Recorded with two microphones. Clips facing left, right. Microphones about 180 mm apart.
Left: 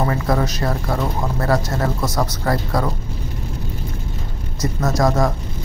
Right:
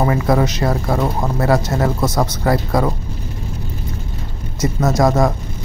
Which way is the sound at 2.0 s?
20° right (ahead or behind).